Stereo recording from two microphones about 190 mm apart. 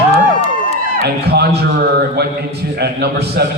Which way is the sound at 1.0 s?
55° right (ahead or behind).